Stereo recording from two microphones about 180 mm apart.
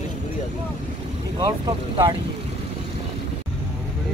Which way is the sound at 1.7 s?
20° right (ahead or behind).